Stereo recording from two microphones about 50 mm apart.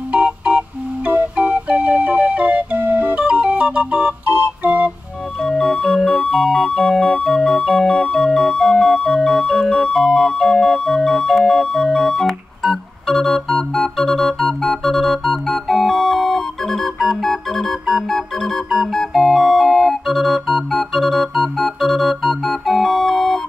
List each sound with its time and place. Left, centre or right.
0.1 s organ: right
5.4 s music: centre
6.3 s organ: centre